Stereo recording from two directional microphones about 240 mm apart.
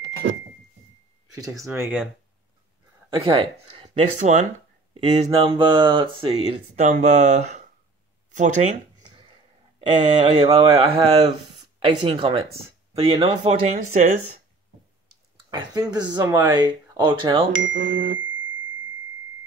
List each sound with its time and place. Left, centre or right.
1.3 s speech: centre
3.1 s speech: right
9.8 s speech: right
15.9 s speech: centre
17.5 s speech: right